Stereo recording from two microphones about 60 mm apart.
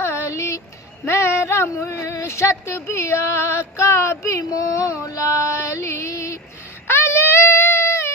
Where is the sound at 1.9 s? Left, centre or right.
Left.